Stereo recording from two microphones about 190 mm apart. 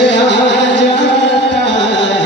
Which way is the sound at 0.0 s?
65° left (ahead or behind).